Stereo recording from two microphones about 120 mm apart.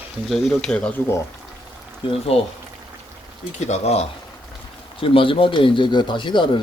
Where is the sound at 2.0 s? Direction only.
55° left (ahead or behind).